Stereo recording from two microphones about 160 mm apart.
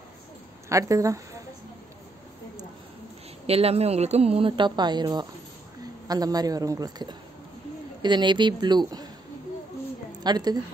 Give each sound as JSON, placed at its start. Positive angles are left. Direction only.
{"t": 0.7, "sound": "a woman's voice", "side_deg": -20}
{"t": 3.4, "sound": "a woman's voice", "side_deg": -40}
{"t": 10.2, "sound": "a woman's voice", "side_deg": -25}